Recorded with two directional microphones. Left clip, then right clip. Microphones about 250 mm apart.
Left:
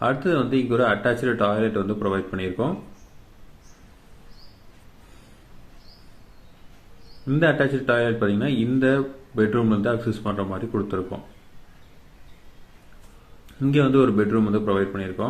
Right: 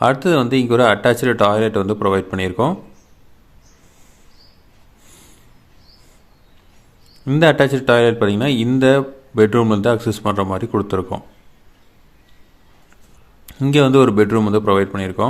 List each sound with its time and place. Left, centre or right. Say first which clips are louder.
0.0 s a man's voice: right 7 dB; right
7.3 s a man's voice: right 7 dB; right
13.6 s a man's voice: right 6 dB; right